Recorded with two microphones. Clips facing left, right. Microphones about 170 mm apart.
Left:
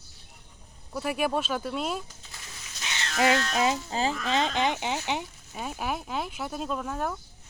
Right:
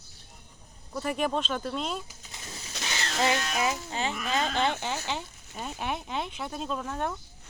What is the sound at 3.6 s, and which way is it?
Speech, 30° left (ahead or behind).